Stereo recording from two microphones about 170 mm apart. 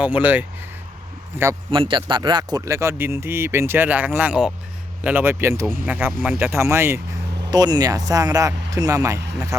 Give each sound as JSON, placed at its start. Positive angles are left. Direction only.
{"t": 0.0, "sound": "speech", "side_deg": -10}
{"t": 1.7, "sound": "speech", "side_deg": -30}